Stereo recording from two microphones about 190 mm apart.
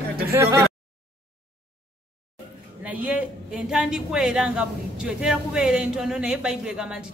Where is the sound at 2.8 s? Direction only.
5° right (ahead or behind).